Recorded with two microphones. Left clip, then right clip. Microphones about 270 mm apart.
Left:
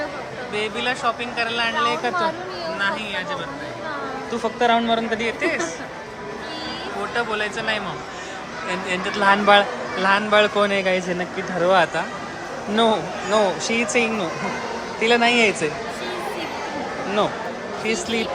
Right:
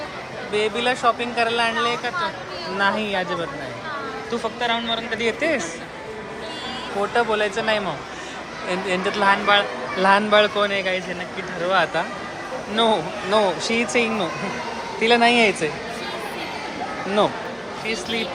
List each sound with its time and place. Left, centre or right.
0.5 s speech: centre
2.7 s speech: centre
4.3 s speech: centre
5.2 s speech: centre
7.1 s speech: centre
15.0 s speech: centre